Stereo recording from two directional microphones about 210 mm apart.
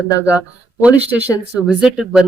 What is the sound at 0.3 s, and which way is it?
Speech, 5° right (ahead or behind).